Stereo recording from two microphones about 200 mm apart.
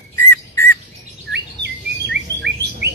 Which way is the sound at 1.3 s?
60° right (ahead or behind).